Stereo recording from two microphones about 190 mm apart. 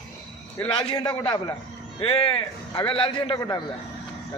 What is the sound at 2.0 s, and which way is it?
A man's voice, 30° left (ahead or behind).